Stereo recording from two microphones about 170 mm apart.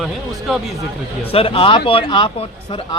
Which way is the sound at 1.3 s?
35° left (ahead or behind).